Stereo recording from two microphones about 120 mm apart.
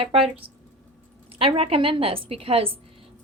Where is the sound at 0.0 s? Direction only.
55° right (ahead or behind).